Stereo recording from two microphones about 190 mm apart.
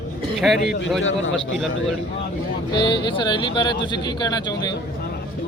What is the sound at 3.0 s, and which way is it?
Speech, 25° left (ahead or behind).